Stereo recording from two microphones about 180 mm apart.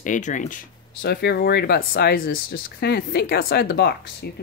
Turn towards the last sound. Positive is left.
turn(degrees=65)  # may be behind; listen again after turning